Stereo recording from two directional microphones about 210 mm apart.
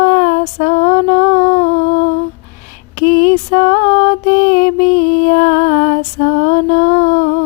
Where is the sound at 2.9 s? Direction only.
40° left (ahead or behind).